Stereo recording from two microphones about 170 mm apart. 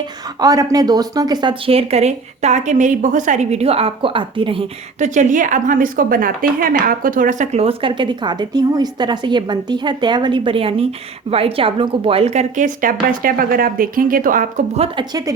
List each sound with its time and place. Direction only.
0.0 s speech: 20° right (ahead or behind)
4.9 s a woman's voice: 45° right (ahead or behind)
14.8 s a woman's voice: 25° right (ahead or behind)